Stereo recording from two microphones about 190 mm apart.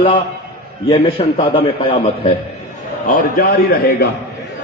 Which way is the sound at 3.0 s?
50° left (ahead or behind).